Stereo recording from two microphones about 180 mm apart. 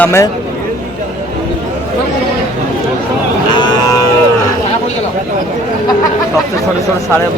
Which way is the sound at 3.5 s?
25° left (ahead or behind).